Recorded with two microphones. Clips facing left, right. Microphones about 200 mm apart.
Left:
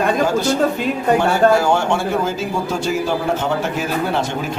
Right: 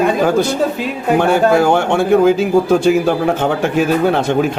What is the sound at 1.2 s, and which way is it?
Speech, 60° right (ahead or behind).